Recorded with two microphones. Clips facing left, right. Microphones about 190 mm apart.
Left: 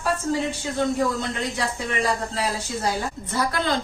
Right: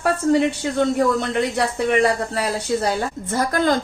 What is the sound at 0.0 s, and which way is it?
A woman's voice, 65° right (ahead or behind).